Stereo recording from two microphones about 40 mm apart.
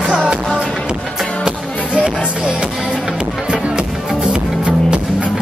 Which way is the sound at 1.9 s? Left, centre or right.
Right.